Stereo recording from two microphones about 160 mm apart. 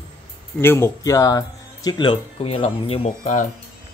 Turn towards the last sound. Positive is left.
turn(degrees=35)  # may be behind; listen again after turning